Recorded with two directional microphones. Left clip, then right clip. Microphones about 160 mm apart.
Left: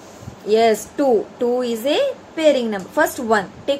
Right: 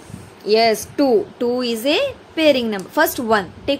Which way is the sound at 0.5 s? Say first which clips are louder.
Even; 35° right (ahead or behind).